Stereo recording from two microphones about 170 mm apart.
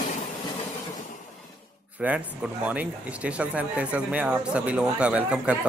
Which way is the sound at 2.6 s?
10° right (ahead or behind).